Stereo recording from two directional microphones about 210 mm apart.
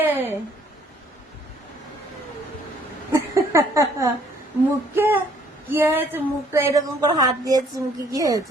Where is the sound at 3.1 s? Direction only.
15° right (ahead or behind).